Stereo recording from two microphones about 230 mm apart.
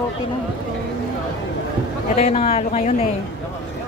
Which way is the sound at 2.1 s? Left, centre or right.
Left.